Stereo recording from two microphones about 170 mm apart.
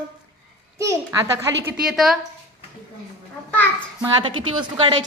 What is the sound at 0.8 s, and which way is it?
Speech, 20° right (ahead or behind).